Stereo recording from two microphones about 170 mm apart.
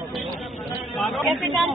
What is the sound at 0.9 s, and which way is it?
Speech, centre (ahead or behind).